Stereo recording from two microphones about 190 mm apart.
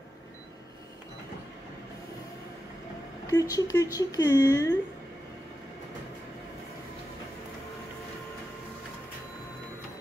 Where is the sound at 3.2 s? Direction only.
20° left (ahead or behind).